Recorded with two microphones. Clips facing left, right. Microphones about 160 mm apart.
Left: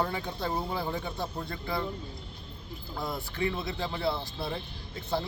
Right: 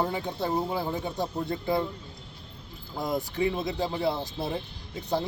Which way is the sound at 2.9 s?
15° right (ahead or behind).